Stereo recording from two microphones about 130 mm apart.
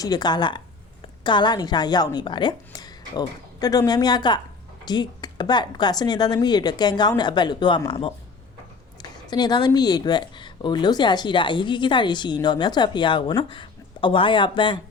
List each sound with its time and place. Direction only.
0.0 s speech: 30° left (ahead or behind)